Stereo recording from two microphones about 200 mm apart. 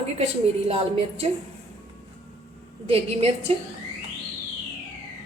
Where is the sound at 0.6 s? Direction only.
30° right (ahead or behind).